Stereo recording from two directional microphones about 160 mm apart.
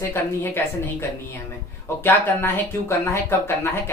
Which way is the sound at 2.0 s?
15° left (ahead or behind).